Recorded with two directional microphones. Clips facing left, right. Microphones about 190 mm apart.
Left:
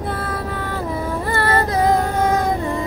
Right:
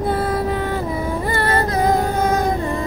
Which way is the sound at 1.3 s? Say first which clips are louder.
Left 1 dB; 15° right (ahead or behind).